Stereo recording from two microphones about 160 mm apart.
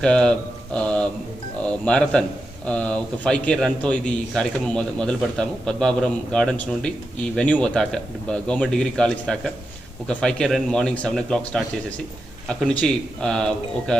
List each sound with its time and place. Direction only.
0.0 s a man's voice: 5° left (ahead or behind)